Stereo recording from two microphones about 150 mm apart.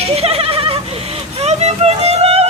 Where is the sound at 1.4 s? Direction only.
45° right (ahead or behind).